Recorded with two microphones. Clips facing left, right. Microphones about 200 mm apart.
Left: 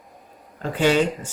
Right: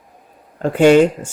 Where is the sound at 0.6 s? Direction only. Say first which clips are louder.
Right 9 dB; 50° right (ahead or behind).